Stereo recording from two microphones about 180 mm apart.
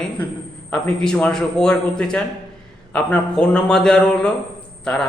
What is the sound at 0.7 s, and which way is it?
A man's voice, 5° left (ahead or behind).